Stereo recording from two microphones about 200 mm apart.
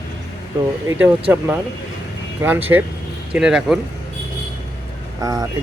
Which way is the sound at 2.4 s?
10° right (ahead or behind).